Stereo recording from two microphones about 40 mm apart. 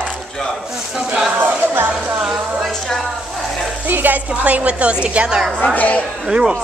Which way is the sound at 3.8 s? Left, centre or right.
Right.